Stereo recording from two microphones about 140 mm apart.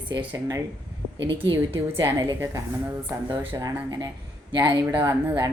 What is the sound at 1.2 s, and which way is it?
Speech, 35° right (ahead or behind).